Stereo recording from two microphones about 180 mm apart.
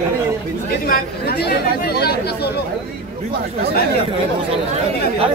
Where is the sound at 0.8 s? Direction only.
60° left (ahead or behind).